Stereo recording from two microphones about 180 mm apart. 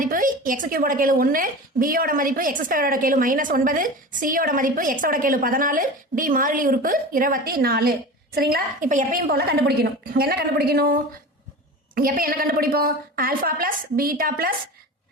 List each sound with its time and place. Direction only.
0.0 s a woman's voice: 50° right (ahead or behind)